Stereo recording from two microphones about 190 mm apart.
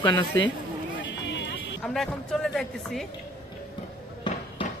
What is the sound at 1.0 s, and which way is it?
Run, 70° left (ahead or behind).